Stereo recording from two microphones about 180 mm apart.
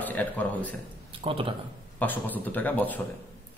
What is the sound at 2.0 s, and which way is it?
A man's voice, 10° left (ahead or behind).